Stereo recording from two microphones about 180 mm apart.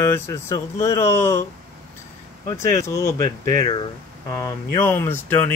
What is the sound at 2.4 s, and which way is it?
Speech, 15° left (ahead or behind).